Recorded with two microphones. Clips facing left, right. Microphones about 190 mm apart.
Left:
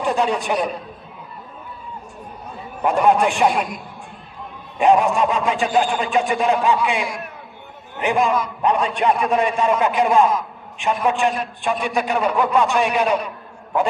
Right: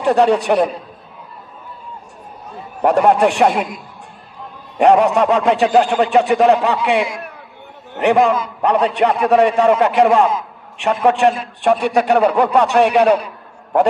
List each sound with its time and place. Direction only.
0.0 s a man's voice: 65° right (ahead or behind)
2.8 s a man's voice: 70° right (ahead or behind)
4.7 s a man's voice: 65° right (ahead or behind)